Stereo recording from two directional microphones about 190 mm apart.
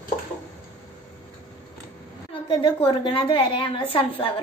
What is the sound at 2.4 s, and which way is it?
A woman's voice, 25° left (ahead or behind).